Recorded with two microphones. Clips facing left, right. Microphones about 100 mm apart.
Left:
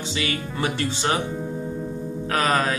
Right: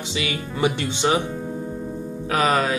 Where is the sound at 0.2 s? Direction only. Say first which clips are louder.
Right 4 dB; 20° right (ahead or behind).